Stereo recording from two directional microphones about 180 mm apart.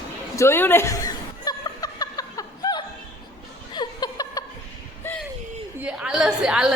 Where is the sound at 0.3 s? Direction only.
15° left (ahead or behind).